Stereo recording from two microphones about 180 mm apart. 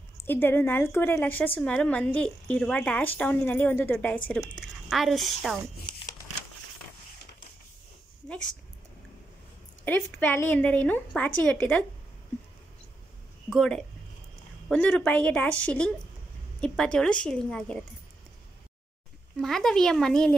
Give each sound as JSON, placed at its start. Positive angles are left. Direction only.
{"t": 0.2, "sound": "a woman's voice", "side_deg": 10}
{"t": 9.8, "sound": "speech", "side_deg": 10}
{"t": 13.5, "sound": "speech", "side_deg": 0}
{"t": 19.4, "sound": "speech", "side_deg": 0}